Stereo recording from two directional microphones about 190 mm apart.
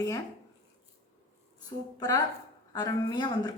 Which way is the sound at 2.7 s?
20° left (ahead or behind).